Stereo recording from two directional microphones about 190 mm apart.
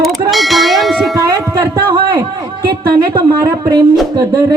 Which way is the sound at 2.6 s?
50° right (ahead or behind).